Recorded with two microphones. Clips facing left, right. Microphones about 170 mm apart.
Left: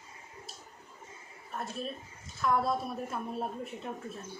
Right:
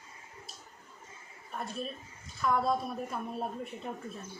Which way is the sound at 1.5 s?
Centre (ahead or behind).